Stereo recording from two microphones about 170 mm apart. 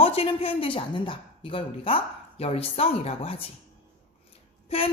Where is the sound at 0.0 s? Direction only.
35° left (ahead or behind).